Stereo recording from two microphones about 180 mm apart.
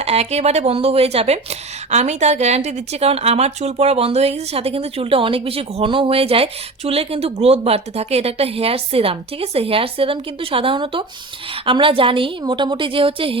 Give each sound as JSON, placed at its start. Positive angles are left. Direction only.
{"t": 0.0, "sound": "a woman's voice", "side_deg": -35}